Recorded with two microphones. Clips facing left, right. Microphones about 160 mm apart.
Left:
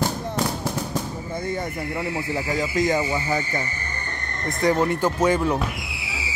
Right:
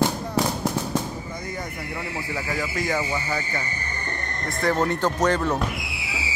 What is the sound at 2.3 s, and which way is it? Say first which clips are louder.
Speech: left 4 dB; 20° left (ahead or behind).